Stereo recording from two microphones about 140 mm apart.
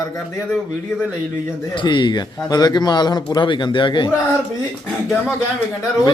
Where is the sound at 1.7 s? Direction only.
35° left (ahead or behind).